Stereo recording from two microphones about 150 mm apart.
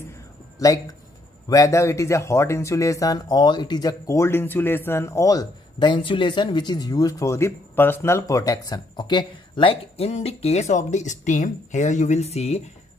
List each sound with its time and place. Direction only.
0.6 s speech: 20° left (ahead or behind); by 12.6 s 45° left (ahead or behind)